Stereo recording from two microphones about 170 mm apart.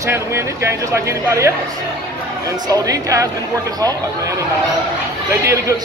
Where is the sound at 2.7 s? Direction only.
20° right (ahead or behind).